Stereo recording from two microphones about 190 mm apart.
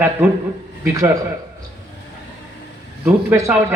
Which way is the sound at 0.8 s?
15° right (ahead or behind).